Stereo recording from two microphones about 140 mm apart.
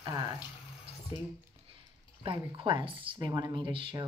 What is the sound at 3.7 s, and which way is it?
Speech, 40° right (ahead or behind).